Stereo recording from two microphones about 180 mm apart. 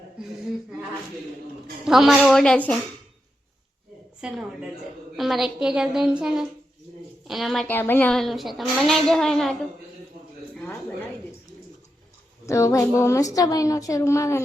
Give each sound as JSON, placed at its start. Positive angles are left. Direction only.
{"t": 1.8, "sound": "a woman's voice", "side_deg": 0}
{"t": 4.2, "sound": "a woman's voice", "side_deg": -5}
{"t": 12.5, "sound": "a woman's voice", "side_deg": 20}